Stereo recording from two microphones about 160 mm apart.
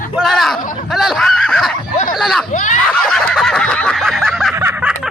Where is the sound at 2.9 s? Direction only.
5° left (ahead or behind).